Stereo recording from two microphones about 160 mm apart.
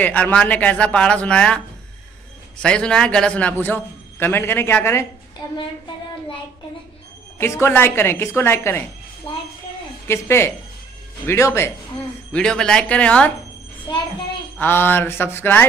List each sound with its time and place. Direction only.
0.0 s a man's voice: 10° left (ahead or behind)
2.6 s a man's voice: 5° left (ahead or behind)
5.4 s a woman's voice: 30° left (ahead or behind)
7.3 s a man's voice: 15° left (ahead or behind)
10.0 s a man's voice: 15° left (ahead or behind)
12.3 s a man's voice: 5° left (ahead or behind)
14.6 s a man's voice: 15° left (ahead or behind)